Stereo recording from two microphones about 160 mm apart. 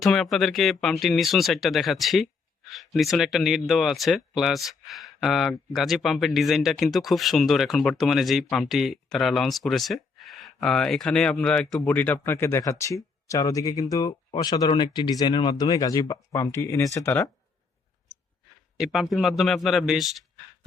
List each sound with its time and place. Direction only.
0.0 s speech: centre (ahead or behind)
18.8 s speech: centre (ahead or behind)